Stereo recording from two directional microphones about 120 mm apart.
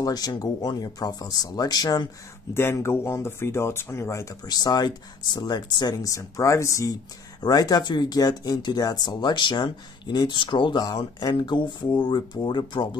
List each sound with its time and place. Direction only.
0.0 s speech: 35° left (ahead or behind)
2.5 s speech: 20° left (ahead or behind); by 12.9 s 40° left (ahead or behind)